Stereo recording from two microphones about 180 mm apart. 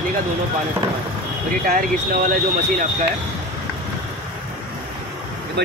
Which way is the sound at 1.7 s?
50° right (ahead or behind).